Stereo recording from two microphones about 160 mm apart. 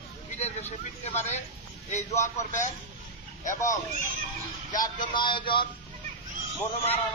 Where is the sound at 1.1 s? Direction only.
45° left (ahead or behind).